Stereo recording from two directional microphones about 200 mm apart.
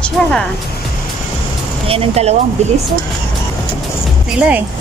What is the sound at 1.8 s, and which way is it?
Speech, 30° right (ahead or behind).